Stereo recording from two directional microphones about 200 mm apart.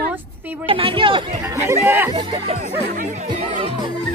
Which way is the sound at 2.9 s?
40° right (ahead or behind).